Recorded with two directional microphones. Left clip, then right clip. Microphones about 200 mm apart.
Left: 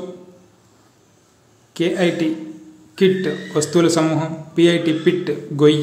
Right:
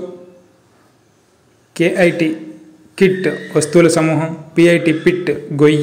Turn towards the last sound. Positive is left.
turn(degrees=-15)  # may be behind; listen again after turning